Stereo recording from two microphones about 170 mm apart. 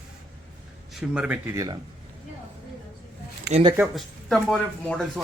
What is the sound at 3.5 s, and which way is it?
Speech, 30° right (ahead or behind).